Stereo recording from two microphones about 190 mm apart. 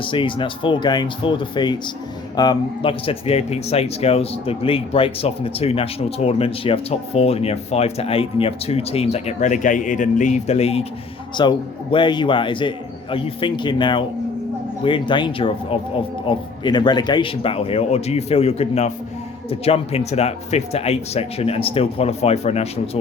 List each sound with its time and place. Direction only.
0.0 s a man's voice: 25° left (ahead or behind)